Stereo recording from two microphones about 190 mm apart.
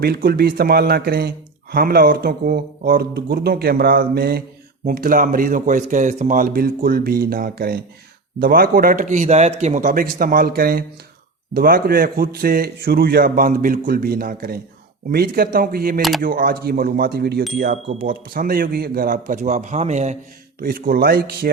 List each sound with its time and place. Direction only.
0.0 s a man's voice: 55° right (ahead or behind)
16.0 s speech: centre (ahead or behind)
16.2 s a man's voice: 50° right (ahead or behind)
20.6 s a man's voice: 50° right (ahead or behind)